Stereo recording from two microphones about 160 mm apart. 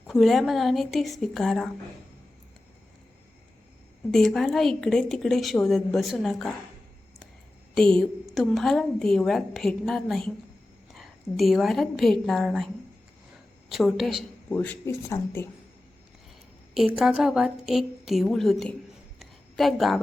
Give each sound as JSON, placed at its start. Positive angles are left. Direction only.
{"t": 0.1, "sound": "a woman's voice", "side_deg": 0}
{"t": 4.1, "sound": "a woman's voice", "side_deg": 0}
{"t": 7.8, "sound": "a woman's voice", "side_deg": 5}
{"t": 14.5, "sound": "speech", "side_deg": 15}
{"t": 16.7, "sound": "a woman's voice", "side_deg": 0}
{"t": 19.2, "sound": "a sound", "side_deg": 0}